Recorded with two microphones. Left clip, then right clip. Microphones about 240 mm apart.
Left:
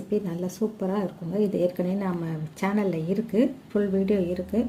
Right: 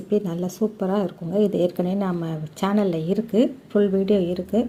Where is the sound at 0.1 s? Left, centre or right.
Centre.